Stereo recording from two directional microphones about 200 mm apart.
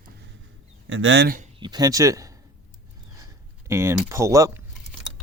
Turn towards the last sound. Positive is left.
turn(degrees=-15)  # may be behind; listen again after turning